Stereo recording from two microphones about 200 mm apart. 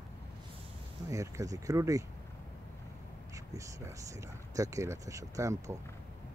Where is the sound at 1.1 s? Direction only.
15° right (ahead or behind).